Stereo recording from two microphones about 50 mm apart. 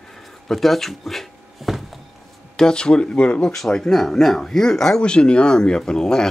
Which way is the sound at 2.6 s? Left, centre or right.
Centre.